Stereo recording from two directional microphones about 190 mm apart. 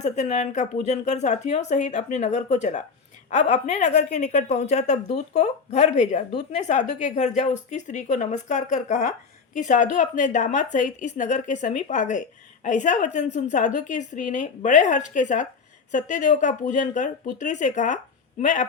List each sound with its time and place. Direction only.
0.0 s a woman's voice: 40° left (ahead or behind)